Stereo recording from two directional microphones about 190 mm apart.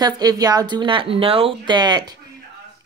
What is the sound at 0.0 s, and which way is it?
A woman's voice, 20° right (ahead or behind).